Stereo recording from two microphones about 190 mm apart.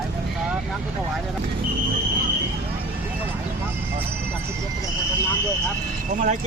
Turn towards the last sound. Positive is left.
turn(degrees=-40)  # may be behind; listen again after turning